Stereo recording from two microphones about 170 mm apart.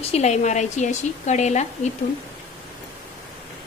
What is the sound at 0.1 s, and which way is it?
A woman's voice, 40° left (ahead or behind).